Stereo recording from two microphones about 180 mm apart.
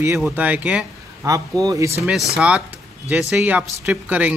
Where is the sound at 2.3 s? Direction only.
5° right (ahead or behind).